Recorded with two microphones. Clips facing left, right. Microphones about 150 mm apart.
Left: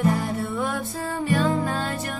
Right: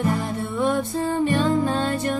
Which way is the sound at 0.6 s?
25° right (ahead or behind).